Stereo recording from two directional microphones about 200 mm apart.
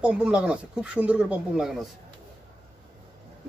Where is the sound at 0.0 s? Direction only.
5° right (ahead or behind).